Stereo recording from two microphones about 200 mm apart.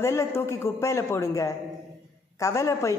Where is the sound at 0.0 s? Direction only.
15° left (ahead or behind).